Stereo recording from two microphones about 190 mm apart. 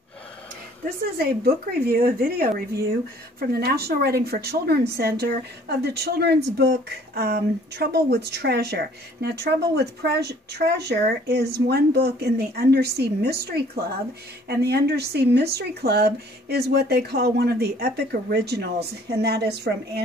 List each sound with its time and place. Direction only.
0.8 s a woman's voice: 55° right (ahead or behind)